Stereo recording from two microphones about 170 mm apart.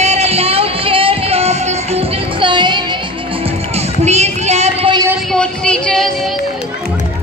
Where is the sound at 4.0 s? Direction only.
40° right (ahead or behind).